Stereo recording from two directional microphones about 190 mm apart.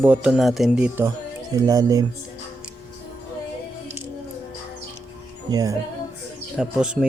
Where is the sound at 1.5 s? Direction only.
20° right (ahead or behind).